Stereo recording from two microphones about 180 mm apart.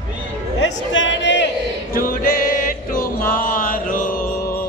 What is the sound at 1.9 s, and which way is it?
Music, 50° left (ahead or behind).